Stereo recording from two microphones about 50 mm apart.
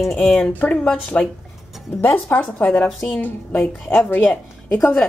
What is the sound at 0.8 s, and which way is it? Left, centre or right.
Speech, centre.